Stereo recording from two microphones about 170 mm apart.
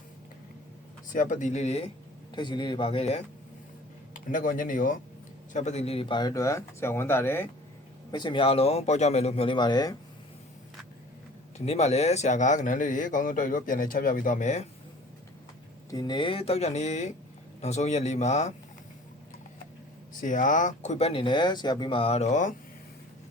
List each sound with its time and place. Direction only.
1.1 s a man's voice: 50° left (ahead or behind)
2.3 s speech: 25° left (ahead or behind)
4.3 s a man's voice: 55° left (ahead or behind)
5.5 s speech: 40° left (ahead or behind); by 7.4 s 15° left (ahead or behind)
8.1 s speech: 30° left (ahead or behind)
11.5 s a man's voice: 40° left (ahead or behind)
15.9 s a man's voice: 25° left (ahead or behind); by 18.5 s 45° left (ahead or behind)
20.2 s speech: 50° left (ahead or behind)